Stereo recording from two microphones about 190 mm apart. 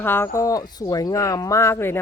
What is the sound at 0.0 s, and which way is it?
Speech, 10° left (ahead or behind).